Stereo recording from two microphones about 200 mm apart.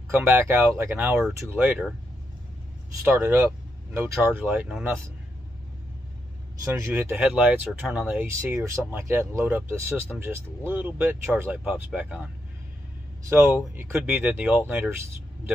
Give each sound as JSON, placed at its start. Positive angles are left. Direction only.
{"t": 0.1, "sound": "speech", "side_deg": -10}
{"t": 3.1, "sound": "speech", "side_deg": -10}
{"t": 6.7, "sound": "speech", "side_deg": -10}